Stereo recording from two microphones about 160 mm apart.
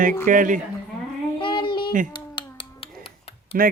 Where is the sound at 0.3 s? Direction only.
55° right (ahead or behind).